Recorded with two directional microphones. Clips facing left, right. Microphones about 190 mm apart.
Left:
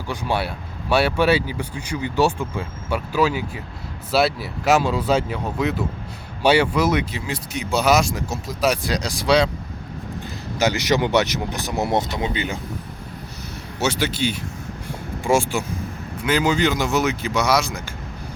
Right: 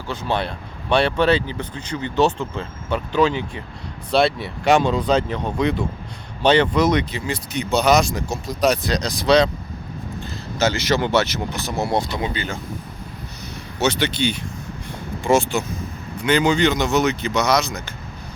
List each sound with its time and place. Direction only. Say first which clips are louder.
0.1 s speech: even; 10° left (ahead or behind)
10.6 s speech: even; 15° left (ahead or behind)
13.7 s speech: right 2 dB; 5° left (ahead or behind)